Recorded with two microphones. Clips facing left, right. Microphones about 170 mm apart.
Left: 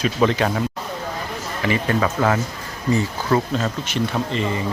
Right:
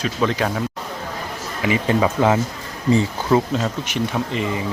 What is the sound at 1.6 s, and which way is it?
Speech, 15° right (ahead or behind).